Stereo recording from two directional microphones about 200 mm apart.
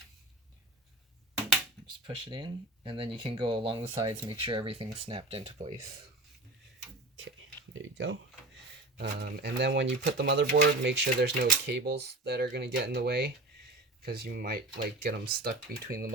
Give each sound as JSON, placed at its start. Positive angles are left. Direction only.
{"t": 2.0, "sound": "speech", "side_deg": -25}
{"t": 7.8, "sound": "speech", "side_deg": -70}
{"t": 9.0, "sound": "speech", "side_deg": -50}